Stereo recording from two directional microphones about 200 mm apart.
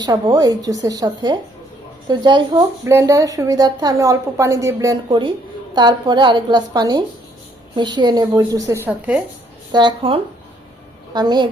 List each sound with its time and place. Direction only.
0.0 s a woman's voice: 20° right (ahead or behind)
9.7 s a woman's voice: 25° right (ahead or behind)